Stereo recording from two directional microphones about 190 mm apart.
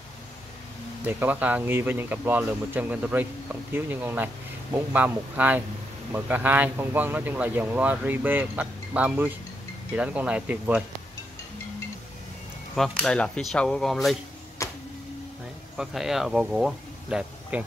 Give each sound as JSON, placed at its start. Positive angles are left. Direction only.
{"t": 1.0, "sound": "speech", "side_deg": -10}
{"t": 12.7, "sound": "speech", "side_deg": 0}
{"t": 14.6, "sound": "a sound", "side_deg": 15}
{"t": 15.8, "sound": "speech", "side_deg": 0}